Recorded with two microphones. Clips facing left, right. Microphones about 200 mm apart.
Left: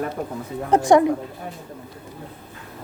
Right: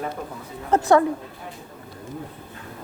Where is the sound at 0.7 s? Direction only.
15° left (ahead or behind).